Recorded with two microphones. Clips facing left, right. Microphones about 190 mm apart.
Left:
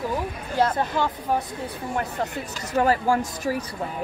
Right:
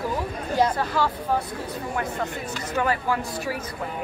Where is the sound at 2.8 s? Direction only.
40° left (ahead or behind).